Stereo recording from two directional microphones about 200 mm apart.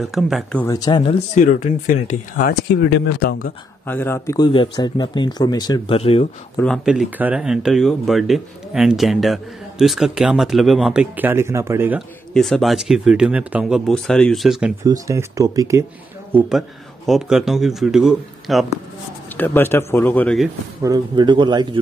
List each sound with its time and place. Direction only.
0.0 s speech: centre (ahead or behind)
0.7 s speech: 20° left (ahead or behind)
1.3 s speech: 40° left (ahead or behind)
3.8 s a man's voice: 10° left (ahead or behind)
4.5 s speech: 25° left (ahead or behind)
6.5 s speech: 5° left (ahead or behind); by 12.0 s 10° right (ahead or behind)
12.4 s speech: centre (ahead or behind)
14.8 s speech: 15° right (ahead or behind)
16.3 s speech: 5° right (ahead or behind)
19.3 s a man's voice: 10° left (ahead or behind)
20.8 s speech: 20° right (ahead or behind)